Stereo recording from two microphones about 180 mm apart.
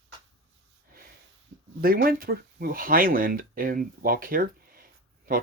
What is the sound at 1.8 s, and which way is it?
Speech, 55° right (ahead or behind).